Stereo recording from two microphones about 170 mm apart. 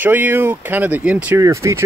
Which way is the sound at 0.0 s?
10° right (ahead or behind).